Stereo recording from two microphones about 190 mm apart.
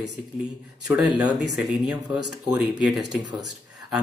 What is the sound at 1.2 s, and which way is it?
Speech, centre (ahead or behind).